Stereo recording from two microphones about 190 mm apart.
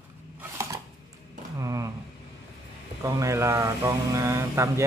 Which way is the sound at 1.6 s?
15° right (ahead or behind).